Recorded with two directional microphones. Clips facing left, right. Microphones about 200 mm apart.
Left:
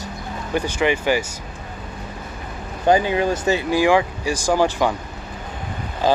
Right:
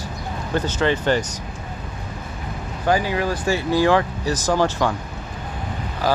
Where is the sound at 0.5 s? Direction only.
15° left (ahead or behind).